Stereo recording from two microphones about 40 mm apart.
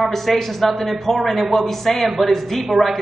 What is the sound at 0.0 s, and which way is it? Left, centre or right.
A man's voice, centre.